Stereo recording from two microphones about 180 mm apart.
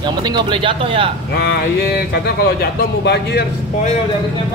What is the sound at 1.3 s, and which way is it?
Speech, 65° left (ahead or behind).